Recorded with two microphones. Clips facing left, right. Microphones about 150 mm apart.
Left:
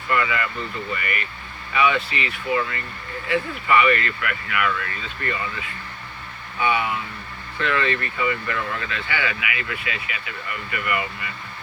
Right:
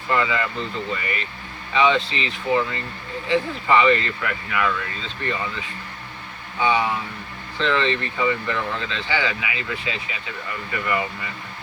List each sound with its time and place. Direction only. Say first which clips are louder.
0.1 s speech: right 1 dB; 25° right (ahead or behind)
6.6 s speech: right 2 dB; 25° right (ahead or behind)